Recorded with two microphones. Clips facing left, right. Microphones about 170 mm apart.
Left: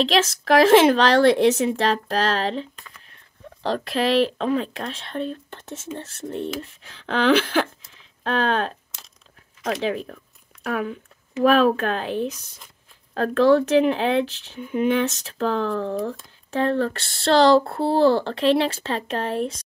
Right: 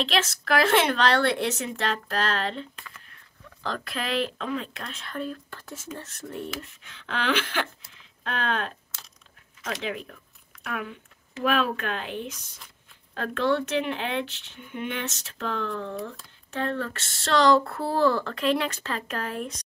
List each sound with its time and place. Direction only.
0.0 s speech: 35° left (ahead or behind)
3.6 s speech: 35° left (ahead or behind)